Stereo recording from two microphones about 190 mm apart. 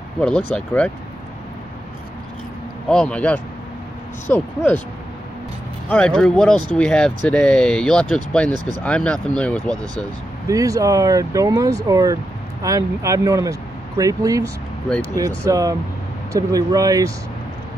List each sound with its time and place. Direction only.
0.2 s speech: 5° left (ahead or behind)
2.9 s speech: 5° left (ahead or behind)
5.9 s speech: 5° left (ahead or behind)
10.5 s speech: 15° right (ahead or behind)